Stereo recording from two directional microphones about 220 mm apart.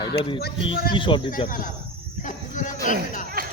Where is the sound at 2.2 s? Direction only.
35° left (ahead or behind).